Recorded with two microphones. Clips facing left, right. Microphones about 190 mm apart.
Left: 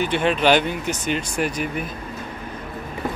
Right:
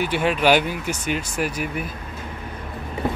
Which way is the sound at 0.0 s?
10° right (ahead or behind).